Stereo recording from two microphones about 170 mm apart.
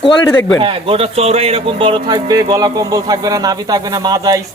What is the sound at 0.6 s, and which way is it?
A man's voice, 30° right (ahead or behind).